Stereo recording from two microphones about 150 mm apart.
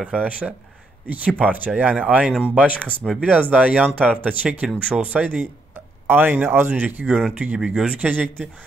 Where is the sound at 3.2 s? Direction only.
10° right (ahead or behind).